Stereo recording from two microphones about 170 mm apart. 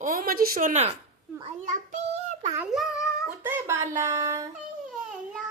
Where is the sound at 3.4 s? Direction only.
15° right (ahead or behind).